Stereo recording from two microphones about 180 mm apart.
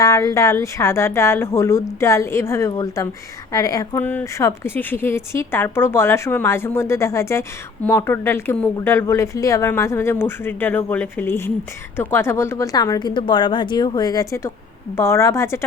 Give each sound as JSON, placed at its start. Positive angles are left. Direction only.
{"t": 0.0, "sound": "a woman's voice", "side_deg": 20}